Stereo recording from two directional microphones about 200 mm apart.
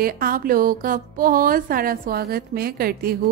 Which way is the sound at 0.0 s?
45° right (ahead or behind).